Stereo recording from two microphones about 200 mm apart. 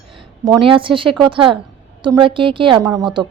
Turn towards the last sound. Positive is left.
turn(degrees=-20)  # may be behind; listen again after turning